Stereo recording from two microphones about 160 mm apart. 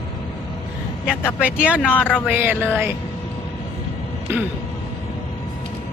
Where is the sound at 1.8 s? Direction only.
10° left (ahead or behind).